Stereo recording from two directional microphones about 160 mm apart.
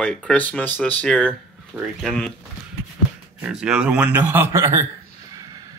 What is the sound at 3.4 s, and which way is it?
Speech, 5° right (ahead or behind).